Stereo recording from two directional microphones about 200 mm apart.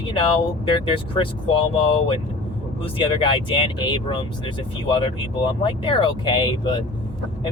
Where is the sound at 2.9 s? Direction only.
25° left (ahead or behind).